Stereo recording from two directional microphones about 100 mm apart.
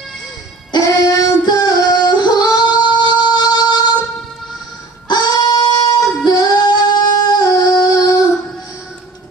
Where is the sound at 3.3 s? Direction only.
45° left (ahead or behind).